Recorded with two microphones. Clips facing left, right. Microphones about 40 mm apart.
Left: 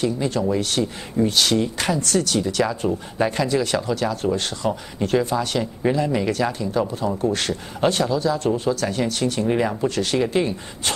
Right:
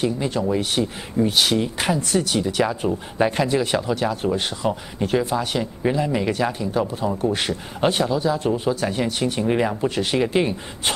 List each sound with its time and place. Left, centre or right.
0.0 s speech: centre